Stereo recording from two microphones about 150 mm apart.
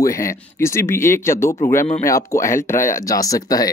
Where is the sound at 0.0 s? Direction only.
20° left (ahead or behind).